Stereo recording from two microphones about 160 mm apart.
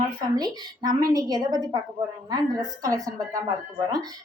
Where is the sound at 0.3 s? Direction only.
25° right (ahead or behind).